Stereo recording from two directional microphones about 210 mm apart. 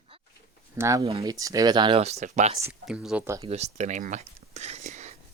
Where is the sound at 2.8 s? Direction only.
5° right (ahead or behind).